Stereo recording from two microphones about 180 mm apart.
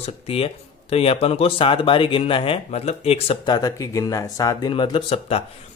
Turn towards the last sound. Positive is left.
turn(degrees=30)  # may be behind; listen again after turning